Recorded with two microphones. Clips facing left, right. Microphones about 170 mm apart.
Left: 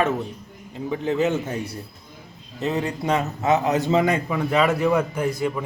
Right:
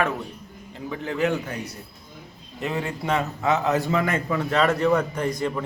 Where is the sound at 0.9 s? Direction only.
20° left (ahead or behind).